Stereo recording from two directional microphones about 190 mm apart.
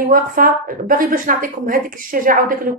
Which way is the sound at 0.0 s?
45° right (ahead or behind).